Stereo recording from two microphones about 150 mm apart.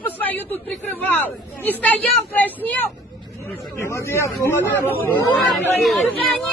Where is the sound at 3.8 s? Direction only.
15° left (ahead or behind).